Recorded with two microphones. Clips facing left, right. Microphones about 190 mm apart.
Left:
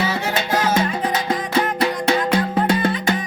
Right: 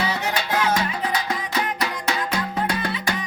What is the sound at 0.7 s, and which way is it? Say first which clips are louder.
Music: left 4 dB; 25° left (ahead or behind).